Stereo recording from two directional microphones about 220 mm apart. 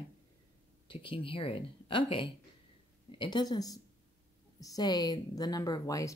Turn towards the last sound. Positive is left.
turn(degrees=15)  # may be behind; listen again after turning